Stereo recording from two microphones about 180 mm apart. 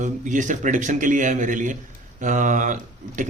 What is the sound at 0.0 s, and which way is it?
Speech, 45° right (ahead or behind).